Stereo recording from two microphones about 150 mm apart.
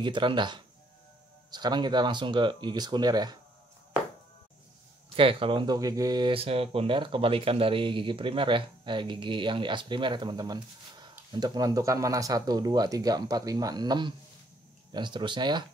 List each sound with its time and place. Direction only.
0.0 s speech: 30° right (ahead or behind)
5.1 s speech: 35° right (ahead or behind)